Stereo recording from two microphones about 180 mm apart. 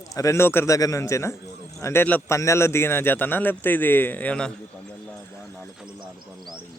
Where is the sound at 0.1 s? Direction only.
15° left (ahead or behind).